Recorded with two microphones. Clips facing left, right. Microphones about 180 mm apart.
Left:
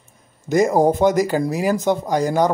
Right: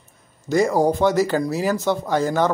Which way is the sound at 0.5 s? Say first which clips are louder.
Left 2 dB; 20° left (ahead or behind).